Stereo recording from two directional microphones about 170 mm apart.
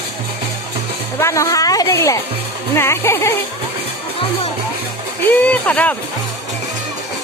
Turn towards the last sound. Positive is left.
turn(degrees=10)  # may be behind; listen again after turning